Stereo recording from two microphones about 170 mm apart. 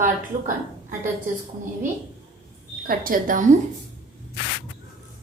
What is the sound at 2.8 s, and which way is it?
Speech, 55° right (ahead or behind).